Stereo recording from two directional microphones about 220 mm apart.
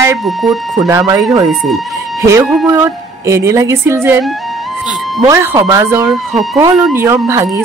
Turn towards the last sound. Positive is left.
turn(degrees=-10)  # may be behind; listen again after turning